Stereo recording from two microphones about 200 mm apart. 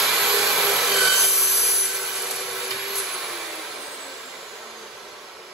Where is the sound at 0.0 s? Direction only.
Centre (ahead or behind).